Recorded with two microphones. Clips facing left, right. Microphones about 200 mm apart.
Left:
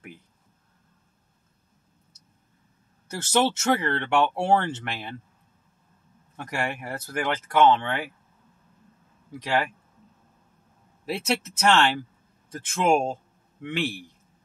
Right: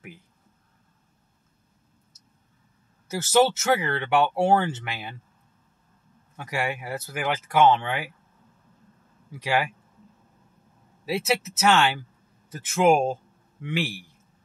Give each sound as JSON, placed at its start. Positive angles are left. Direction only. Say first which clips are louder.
{"t": 3.1, "sound": "speech", "louder": "right 3 dB", "side_deg": -5}
{"t": 6.3, "sound": "speech", "louder": "right 1 dB", "side_deg": 0}
{"t": 9.4, "sound": "speech", "louder": "right 1 dB", "side_deg": -10}
{"t": 11.1, "sound": "a man's voice", "louder": "right 2 dB", "side_deg": -5}